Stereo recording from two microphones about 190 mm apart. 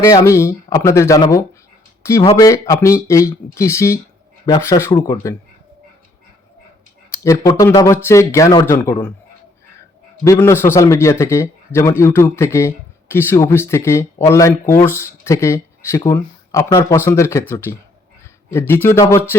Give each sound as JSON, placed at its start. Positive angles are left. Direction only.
{"t": 0.0, "sound": "a man's voice", "side_deg": 15}
{"t": 2.2, "sound": "speech", "side_deg": 25}
{"t": 2.5, "sound": "a man's voice", "side_deg": 15}
{"t": 7.1, "sound": "a man's voice", "side_deg": 15}
{"t": 10.2, "sound": "a man's voice", "side_deg": 15}